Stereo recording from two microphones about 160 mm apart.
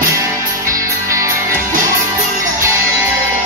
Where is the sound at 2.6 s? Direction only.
15° right (ahead or behind).